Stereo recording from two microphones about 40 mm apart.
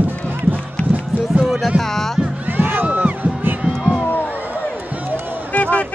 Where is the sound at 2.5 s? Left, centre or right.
Right.